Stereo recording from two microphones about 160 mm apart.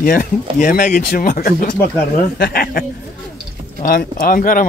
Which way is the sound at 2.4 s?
70° left (ahead or behind).